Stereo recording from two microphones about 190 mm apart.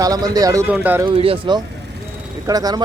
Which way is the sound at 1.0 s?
30° right (ahead or behind).